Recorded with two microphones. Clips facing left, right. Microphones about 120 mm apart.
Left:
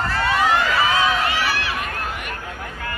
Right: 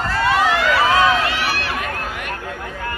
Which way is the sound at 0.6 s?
75° right (ahead or behind).